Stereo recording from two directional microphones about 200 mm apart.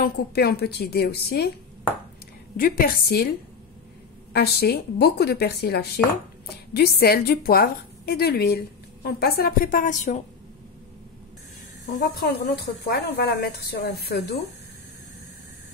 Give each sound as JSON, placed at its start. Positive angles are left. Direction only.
{"t": 0.0, "sound": "a woman's voice", "side_deg": 50}
{"t": 2.5, "sound": "a woman's voice", "side_deg": 45}
{"t": 4.3, "sound": "a woman's voice", "side_deg": 50}
{"t": 11.8, "sound": "a woman's voice", "side_deg": 45}